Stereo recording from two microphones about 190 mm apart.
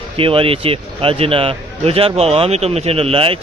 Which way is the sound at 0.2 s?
30° right (ahead or behind).